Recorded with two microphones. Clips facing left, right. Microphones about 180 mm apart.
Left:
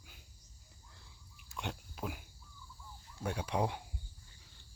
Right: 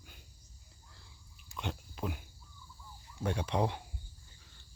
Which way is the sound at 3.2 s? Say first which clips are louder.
Right 2 dB; 5° left (ahead or behind).